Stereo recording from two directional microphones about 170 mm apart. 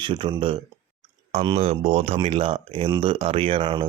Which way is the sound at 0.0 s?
30° right (ahead or behind).